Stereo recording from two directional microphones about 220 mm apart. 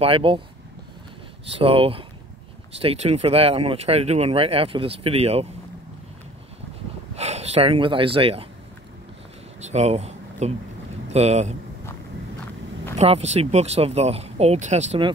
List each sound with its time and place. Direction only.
0.0 s speech: 25° right (ahead or behind)
1.6 s speech: 25° right (ahead or behind)
7.2 s speech: 30° right (ahead or behind)
9.6 s a sound: 30° right (ahead or behind)
11.1 s speech: 30° right (ahead or behind)
12.9 s speech: 30° right (ahead or behind)